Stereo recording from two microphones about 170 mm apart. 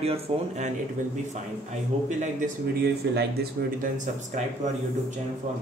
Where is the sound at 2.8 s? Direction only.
70° right (ahead or behind); by 4.4 s 45° right (ahead or behind).